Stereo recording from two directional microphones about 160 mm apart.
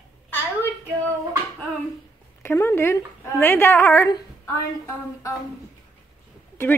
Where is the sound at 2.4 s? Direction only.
15° left (ahead or behind).